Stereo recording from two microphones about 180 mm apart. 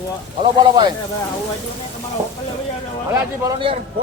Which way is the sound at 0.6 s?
25° right (ahead or behind).